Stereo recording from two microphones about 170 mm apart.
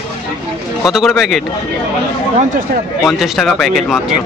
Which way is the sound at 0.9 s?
Centre (ahead or behind).